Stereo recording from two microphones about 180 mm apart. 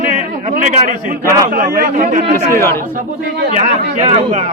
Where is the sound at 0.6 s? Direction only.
45° right (ahead or behind).